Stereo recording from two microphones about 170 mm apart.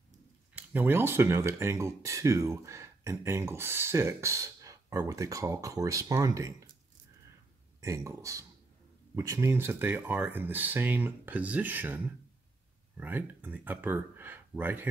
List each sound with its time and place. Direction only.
0.6 s speech: 10° right (ahead or behind)
7.8 s speech: 20° right (ahead or behind)